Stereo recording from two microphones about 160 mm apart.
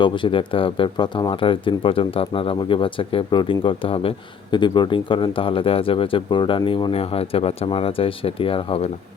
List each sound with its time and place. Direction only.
0.0 s speech: 30° left (ahead or behind)